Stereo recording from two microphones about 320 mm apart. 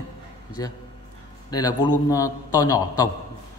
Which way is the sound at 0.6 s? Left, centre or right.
Centre.